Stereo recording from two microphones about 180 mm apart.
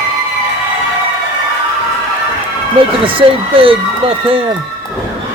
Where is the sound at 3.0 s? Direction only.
30° right (ahead or behind).